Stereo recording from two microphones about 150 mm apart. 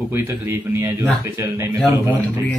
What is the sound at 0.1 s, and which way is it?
Speech, 15° right (ahead or behind).